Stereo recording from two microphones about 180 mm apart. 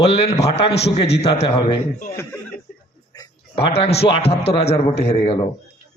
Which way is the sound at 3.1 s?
20° left (ahead or behind).